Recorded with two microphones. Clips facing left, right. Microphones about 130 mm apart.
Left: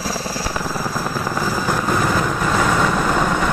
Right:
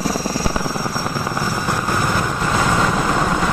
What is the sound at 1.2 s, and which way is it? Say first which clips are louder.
Vehicle: left 1 dB; 5° right (ahead or behind).